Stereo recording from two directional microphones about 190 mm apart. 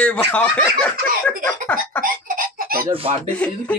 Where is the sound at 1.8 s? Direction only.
45° right (ahead or behind).